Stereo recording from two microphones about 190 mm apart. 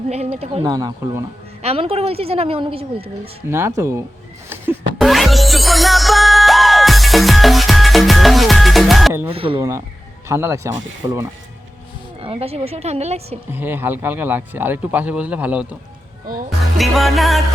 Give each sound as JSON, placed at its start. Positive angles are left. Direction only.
{"t": 0.1, "sound": "a woman's voice", "side_deg": -35}
{"t": 0.6, "sound": "speech", "side_deg": -20}
{"t": 1.6, "sound": "a woman's voice", "side_deg": -30}
{"t": 3.5, "sound": "speech", "side_deg": -15}
{"t": 4.4, "sound": "a sound", "side_deg": -10}
{"t": 4.9, "sound": "music", "side_deg": 0}
{"t": 9.3, "sound": "speech", "side_deg": -30}
{"t": 9.6, "sound": "speech", "side_deg": -15}
{"t": 12.2, "sound": "a woman's voice", "side_deg": -30}
{"t": 13.5, "sound": "speech", "side_deg": -10}
{"t": 16.2, "sound": "speech", "side_deg": -50}
{"t": 16.7, "sound": "music", "side_deg": 0}